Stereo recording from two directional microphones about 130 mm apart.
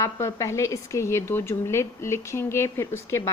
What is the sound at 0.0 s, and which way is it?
A woman's voice, 25° left (ahead or behind).